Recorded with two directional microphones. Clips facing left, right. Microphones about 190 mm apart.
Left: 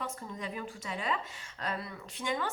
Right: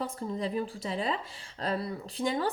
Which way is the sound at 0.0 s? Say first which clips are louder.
Right 7 dB; 35° right (ahead or behind).